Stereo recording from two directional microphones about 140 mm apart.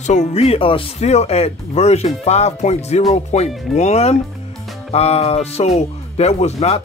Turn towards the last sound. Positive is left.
turn(degrees=50)  # may be behind; listen again after turning